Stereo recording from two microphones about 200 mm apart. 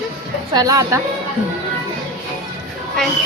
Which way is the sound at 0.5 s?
20° right (ahead or behind).